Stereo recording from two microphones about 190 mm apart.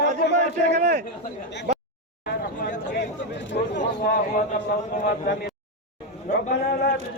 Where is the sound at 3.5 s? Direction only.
55° left (ahead or behind).